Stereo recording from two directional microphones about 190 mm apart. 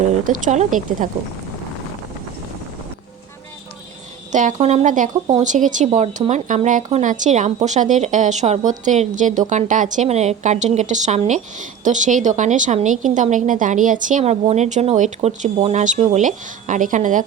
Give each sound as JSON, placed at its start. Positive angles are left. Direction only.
{"t": 0.3, "sound": "speech", "side_deg": -40}
{"t": 4.3, "sound": "a woman's voice", "side_deg": -40}